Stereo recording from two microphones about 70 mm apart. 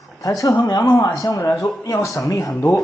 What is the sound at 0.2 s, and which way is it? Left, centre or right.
Speech, left.